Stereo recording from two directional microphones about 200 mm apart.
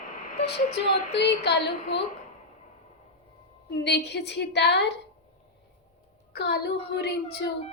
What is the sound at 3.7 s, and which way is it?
A woman's voice, 55° left (ahead or behind).